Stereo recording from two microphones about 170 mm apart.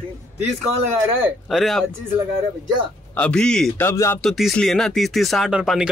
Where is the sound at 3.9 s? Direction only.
15° left (ahead or behind).